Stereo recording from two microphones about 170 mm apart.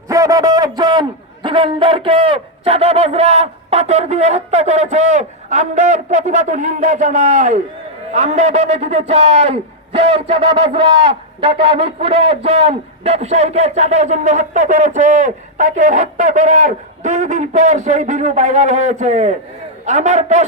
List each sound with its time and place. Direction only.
0.1 s a man's voice: 20° right (ahead or behind); by 20.5 s 45° right (ahead or behind)